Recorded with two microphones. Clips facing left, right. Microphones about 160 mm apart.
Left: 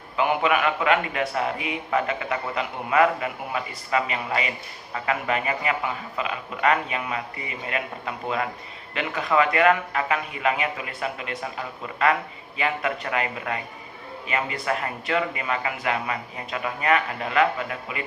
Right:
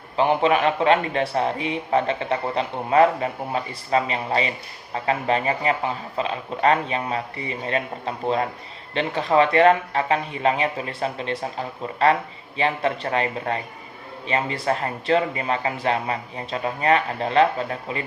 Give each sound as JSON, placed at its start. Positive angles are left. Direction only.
{"t": 0.2, "sound": "a man's voice", "side_deg": -30}